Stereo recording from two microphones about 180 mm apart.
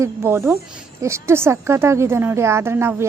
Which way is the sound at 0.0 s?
15° right (ahead or behind).